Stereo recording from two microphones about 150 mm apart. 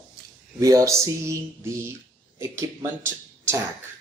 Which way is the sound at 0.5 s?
20° right (ahead or behind).